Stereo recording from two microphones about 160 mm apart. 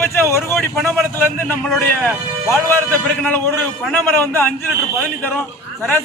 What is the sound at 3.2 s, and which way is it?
A man's voice, 10° left (ahead or behind).